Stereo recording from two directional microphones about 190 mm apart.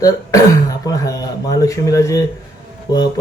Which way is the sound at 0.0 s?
15° left (ahead or behind).